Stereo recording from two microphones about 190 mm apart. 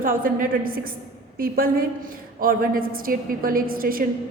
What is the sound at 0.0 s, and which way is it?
A woman's voice, 45° right (ahead or behind).